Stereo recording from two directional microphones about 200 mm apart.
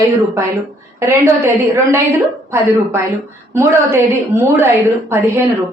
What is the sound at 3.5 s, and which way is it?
A woman's voice, 10° right (ahead or behind).